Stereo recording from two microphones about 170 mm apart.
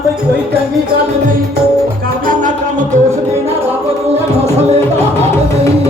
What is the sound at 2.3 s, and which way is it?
Music, 50° right (ahead or behind).